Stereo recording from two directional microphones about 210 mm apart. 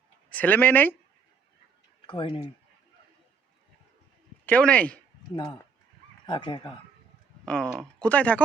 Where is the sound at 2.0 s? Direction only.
25° left (ahead or behind).